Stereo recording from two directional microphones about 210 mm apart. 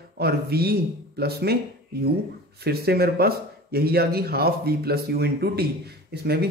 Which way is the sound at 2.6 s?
50° right (ahead or behind).